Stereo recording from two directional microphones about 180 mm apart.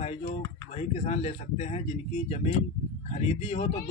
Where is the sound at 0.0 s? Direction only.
40° left (ahead or behind).